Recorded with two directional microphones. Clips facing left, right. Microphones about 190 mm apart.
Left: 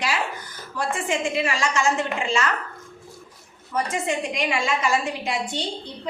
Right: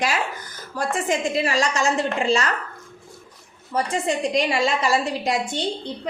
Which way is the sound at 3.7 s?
35° right (ahead or behind).